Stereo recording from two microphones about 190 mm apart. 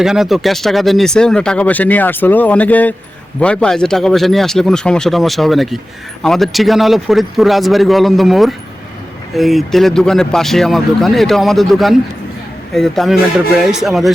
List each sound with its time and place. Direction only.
0.0 s speech: centre (ahead or behind)